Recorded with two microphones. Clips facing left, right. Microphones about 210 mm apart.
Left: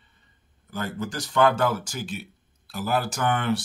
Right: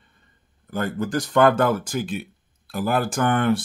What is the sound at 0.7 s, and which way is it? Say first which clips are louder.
Speech: right 6 dB; 55° right (ahead or behind).